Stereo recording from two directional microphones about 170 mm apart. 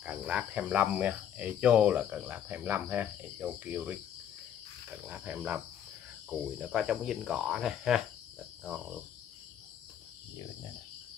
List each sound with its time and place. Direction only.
0.0 s cricket: 5° right (ahead or behind)
5.0 s cricket: 10° right (ahead or behind)
6.6 s cricket: 5° right (ahead or behind)